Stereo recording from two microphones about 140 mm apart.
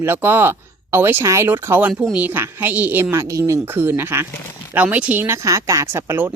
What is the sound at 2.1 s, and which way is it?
Speech, 15° right (ahead or behind).